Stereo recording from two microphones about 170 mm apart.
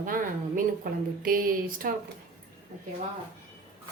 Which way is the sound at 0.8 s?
55° right (ahead or behind).